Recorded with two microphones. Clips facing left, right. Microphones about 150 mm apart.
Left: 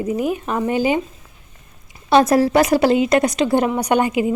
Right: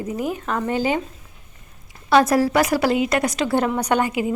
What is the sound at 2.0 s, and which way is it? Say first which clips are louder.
A woman's voice: left 2 dB; 20° left (ahead or behind).